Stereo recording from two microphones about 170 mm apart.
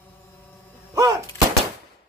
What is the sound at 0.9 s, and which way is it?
Artillery fire, 20° right (ahead or behind).